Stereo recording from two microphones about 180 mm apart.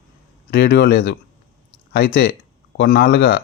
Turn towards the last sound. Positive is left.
turn(degrees=55)  # may be behind; listen again after turning